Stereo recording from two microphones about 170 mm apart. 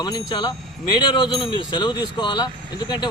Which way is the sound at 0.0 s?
25° left (ahead or behind).